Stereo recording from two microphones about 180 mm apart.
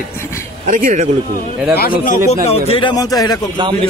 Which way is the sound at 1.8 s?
55° left (ahead or behind).